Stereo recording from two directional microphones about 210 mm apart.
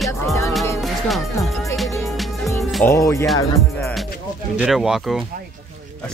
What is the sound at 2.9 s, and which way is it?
Speech, 15° left (ahead or behind).